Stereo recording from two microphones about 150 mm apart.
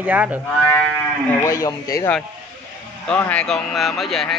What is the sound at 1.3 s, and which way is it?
Speech, 20° left (ahead or behind).